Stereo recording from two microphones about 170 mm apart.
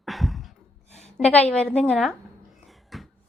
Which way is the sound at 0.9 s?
40° left (ahead or behind).